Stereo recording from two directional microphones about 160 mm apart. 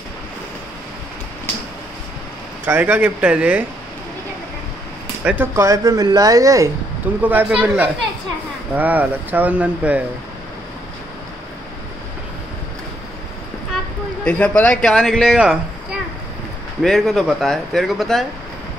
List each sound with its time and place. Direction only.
2.6 s speech: 10° right (ahead or behind)
5.2 s speech: 10° right (ahead or behind)
7.2 s speech: 10° right (ahead or behind)
14.2 s speech: 10° left (ahead or behind)